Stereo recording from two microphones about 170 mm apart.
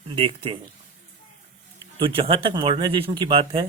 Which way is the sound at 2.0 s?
30° right (ahead or behind).